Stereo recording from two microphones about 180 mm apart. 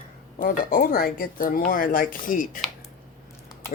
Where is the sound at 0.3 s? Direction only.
50° left (ahead or behind).